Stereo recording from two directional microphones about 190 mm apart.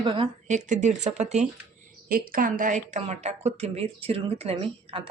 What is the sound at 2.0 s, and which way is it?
A woman's voice, 50° right (ahead or behind).